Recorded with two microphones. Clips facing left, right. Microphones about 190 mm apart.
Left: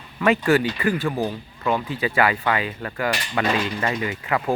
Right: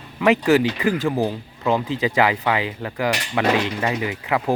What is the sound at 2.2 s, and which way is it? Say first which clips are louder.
Cutlery: right 1 dB; 15° right (ahead or behind).